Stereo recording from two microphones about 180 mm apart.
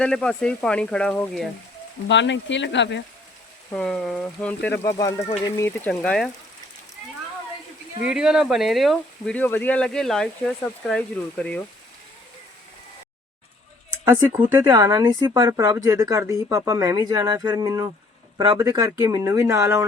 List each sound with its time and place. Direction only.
0.0 s speech: 5° left (ahead or behind)
2.0 s speech: 85° left
3.7 s speech: 5° left (ahead or behind)
8.0 s speech: 5° right (ahead or behind)
14.0 s speech: 15° right (ahead or behind)